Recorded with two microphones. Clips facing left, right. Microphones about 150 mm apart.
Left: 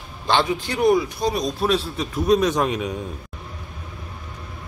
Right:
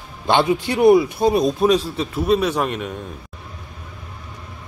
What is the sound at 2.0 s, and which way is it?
A man's voice, 5° right (ahead or behind).